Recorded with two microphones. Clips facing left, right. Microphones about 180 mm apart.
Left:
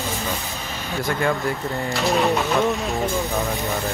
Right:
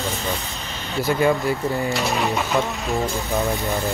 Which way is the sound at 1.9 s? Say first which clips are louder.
Left 3 dB; centre (ahead or behind).